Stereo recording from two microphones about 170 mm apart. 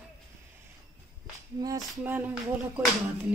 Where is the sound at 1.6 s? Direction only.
20° right (ahead or behind).